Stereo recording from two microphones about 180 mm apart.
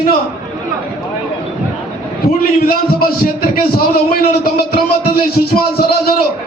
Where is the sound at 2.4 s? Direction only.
55° left (ahead or behind).